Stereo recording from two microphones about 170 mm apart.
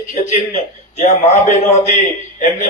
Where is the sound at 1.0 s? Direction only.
45° left (ahead or behind).